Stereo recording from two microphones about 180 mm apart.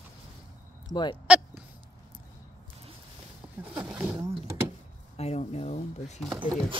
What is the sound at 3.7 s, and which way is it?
Wild animals, 5° right (ahead or behind).